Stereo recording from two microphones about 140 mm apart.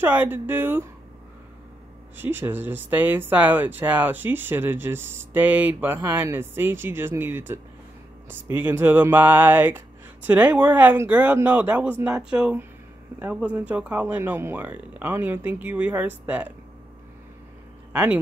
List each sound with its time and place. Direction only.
0.0 s speech: 15° right (ahead or behind)
2.1 s speech: 15° right (ahead or behind)
17.9 s speech: 10° right (ahead or behind)